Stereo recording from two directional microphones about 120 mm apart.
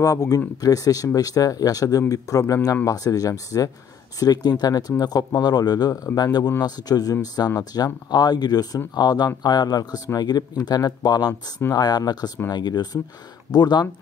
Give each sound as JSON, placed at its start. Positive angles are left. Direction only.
{"t": 0.0, "sound": "speech", "side_deg": 30}